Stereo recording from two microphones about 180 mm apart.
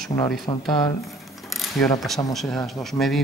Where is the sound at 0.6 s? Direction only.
Centre (ahead or behind).